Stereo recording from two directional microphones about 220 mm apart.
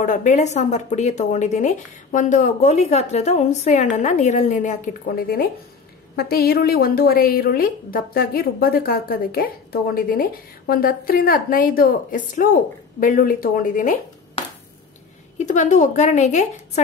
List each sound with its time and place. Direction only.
0.0 s a woman's voice: 35° left (ahead or behind)
15.3 s speech: 35° left (ahead or behind)